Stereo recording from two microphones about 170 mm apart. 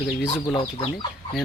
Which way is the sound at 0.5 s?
30° left (ahead or behind).